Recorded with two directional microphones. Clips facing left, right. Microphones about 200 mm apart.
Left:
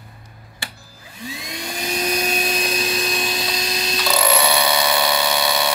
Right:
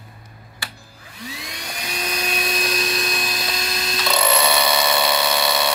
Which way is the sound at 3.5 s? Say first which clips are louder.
Left 2 dB; 20° left (ahead or behind).